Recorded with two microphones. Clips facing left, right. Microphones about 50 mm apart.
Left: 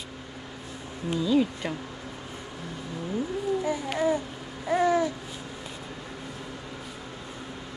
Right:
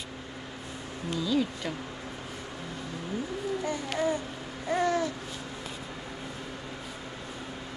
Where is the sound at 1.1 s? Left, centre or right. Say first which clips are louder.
Left 4 dB; left.